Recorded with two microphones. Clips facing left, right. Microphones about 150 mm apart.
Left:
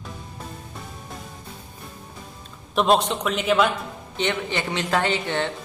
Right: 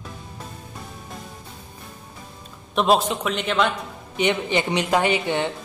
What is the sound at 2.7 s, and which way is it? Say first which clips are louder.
Speech: even; centre (ahead or behind).